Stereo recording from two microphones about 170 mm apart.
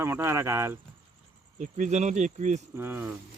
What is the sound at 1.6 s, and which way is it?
Speech, 45° right (ahead or behind).